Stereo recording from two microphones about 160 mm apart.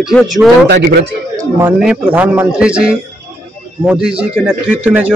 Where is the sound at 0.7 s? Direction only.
90° right.